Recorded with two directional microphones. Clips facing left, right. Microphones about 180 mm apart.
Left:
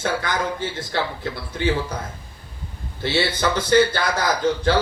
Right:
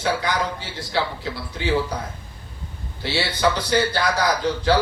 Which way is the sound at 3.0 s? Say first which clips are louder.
Even; 50° left (ahead or behind).